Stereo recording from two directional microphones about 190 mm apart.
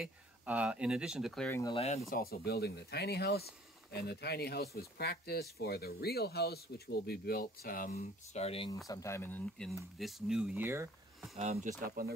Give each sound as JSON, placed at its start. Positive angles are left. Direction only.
{"t": 0.0, "sound": "speech", "side_deg": -5}
{"t": 2.0, "sound": "speech", "side_deg": 50}
{"t": 7.9, "sound": "speech", "side_deg": 35}
{"t": 8.8, "sound": "speech", "side_deg": 15}
{"t": 11.3, "sound": "speech", "side_deg": -35}
{"t": 11.8, "sound": "speech", "side_deg": -50}